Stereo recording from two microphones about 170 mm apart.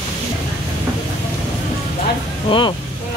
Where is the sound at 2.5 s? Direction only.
35° left (ahead or behind).